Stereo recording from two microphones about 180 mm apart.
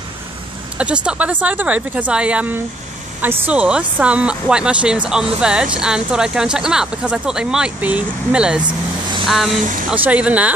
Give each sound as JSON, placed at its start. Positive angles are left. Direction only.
{"t": 0.7, "sound": "speech", "side_deg": -5}
{"t": 9.6, "sound": "speech", "side_deg": -45}
{"t": 10.0, "sound": "speech", "side_deg": -10}